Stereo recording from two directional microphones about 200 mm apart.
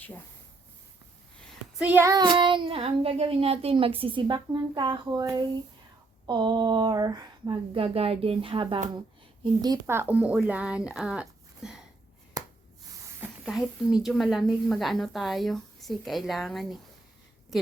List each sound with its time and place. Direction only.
1.8 s child singing: 10° right (ahead or behind); by 8.8 s 25° right (ahead or behind)
9.4 s speech: 20° right (ahead or behind); by 11.8 s 5° right (ahead or behind)
12.4 s finger snapping: 20° right (ahead or behind)
13.1 s a woman's voice: 5° right (ahead or behind)